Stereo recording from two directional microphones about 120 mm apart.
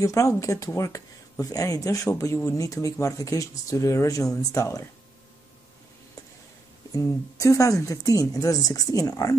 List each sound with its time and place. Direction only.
0.0 s speech: 25° left (ahead or behind)
6.9 s speech: 25° left (ahead or behind)